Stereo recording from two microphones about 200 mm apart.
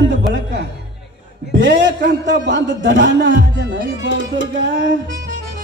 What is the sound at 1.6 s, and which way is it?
A man's voice, 65° right (ahead or behind).